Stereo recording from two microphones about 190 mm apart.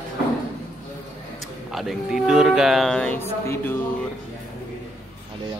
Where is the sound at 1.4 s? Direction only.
Centre (ahead or behind).